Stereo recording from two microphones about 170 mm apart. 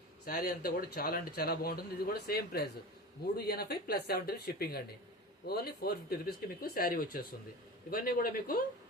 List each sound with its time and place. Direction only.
0.3 s speech: 60° left (ahead or behind)